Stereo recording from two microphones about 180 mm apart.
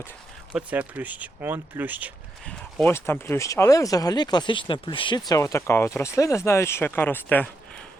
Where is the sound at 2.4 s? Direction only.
10° left (ahead or behind).